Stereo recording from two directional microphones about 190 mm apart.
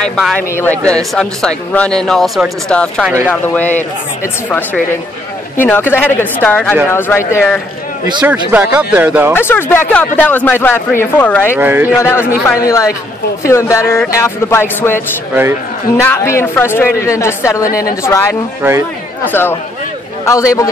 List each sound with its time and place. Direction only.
0.0 s speech: 5° left (ahead or behind)
8.2 s speech: 10° right (ahead or behind)
9.3 s speech: 10° left (ahead or behind)
11.5 s speech: 10° right (ahead or behind)
12.0 s speech: 15° left (ahead or behind)
16.1 s speech: 10° left (ahead or behind)
18.6 s speech: 15° right (ahead or behind)
19.2 s speech: 10° left (ahead or behind)